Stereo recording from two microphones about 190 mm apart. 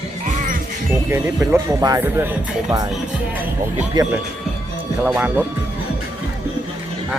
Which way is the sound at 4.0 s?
20° right (ahead or behind).